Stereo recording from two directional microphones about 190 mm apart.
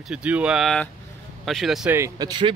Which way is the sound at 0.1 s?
5° right (ahead or behind).